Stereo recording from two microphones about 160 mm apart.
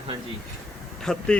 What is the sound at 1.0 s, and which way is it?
Speech, 5° left (ahead or behind).